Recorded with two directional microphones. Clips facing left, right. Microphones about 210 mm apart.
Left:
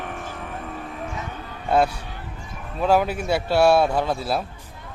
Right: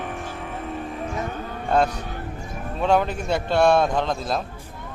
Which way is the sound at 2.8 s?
5° left (ahead or behind).